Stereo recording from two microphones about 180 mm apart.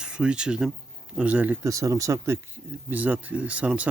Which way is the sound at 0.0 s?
5° right (ahead or behind).